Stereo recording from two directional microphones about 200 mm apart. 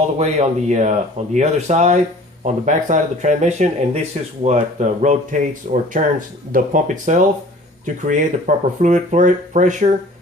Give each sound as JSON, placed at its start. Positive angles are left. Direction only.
{"t": 0.2, "sound": "speech", "side_deg": -35}